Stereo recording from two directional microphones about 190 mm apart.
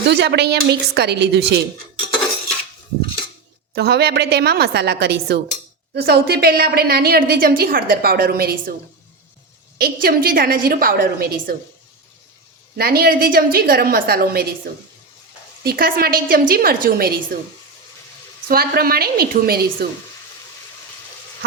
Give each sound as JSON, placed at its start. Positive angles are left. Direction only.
{"t": 0.1, "sound": "a woman's voice", "side_deg": -60}
{"t": 3.8, "sound": "a woman's voice", "side_deg": -60}
{"t": 9.7, "sound": "a woman's voice", "side_deg": -50}
{"t": 12.7, "sound": "a woman's voice", "side_deg": -55}
{"t": 18.4, "sound": "a woman's voice", "side_deg": -50}